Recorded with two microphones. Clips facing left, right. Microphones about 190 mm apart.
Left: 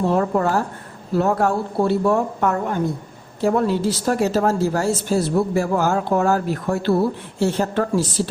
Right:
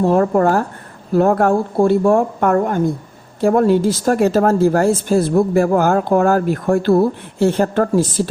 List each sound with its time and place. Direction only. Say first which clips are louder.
0.0 s speech: right 5 dB; 45° right (ahead or behind)